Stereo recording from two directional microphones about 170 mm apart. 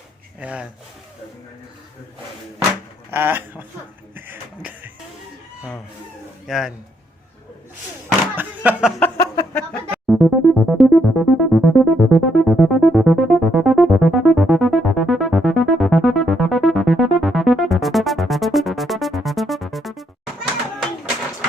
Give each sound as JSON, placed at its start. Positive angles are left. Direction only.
{"t": 0.3, "sound": "speech", "side_deg": -5}
{"t": 3.1, "sound": "speech", "side_deg": -15}
{"t": 4.1, "sound": "a sound", "side_deg": -10}
{"t": 6.5, "sound": "speech", "side_deg": 0}
{"t": 8.4, "sound": "speech", "side_deg": -10}
{"t": 9.0, "sound": "a sound", "side_deg": 15}
{"t": 9.6, "sound": "music", "side_deg": 5}